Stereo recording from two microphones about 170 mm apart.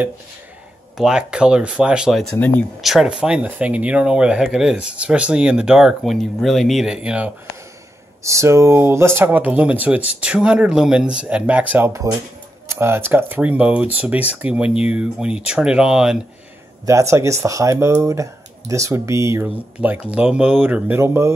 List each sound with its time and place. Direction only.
0.9 s speech: 5° right (ahead or behind)
2.3 s speech: 10° left (ahead or behind)
2.8 s speech: centre (ahead or behind)
8.2 s speech: 15° right (ahead or behind)
16.8 s speech: 15° right (ahead or behind)